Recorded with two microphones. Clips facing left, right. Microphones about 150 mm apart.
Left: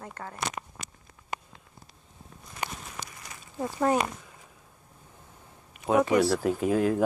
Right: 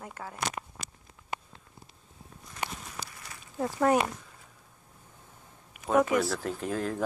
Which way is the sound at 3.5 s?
5° left (ahead or behind).